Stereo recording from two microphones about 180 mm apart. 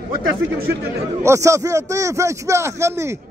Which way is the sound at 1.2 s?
15° right (ahead or behind).